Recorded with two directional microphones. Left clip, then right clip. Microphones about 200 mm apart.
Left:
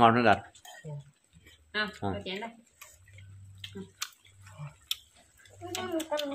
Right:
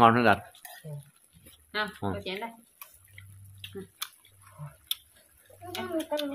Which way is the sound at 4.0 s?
5° right (ahead or behind).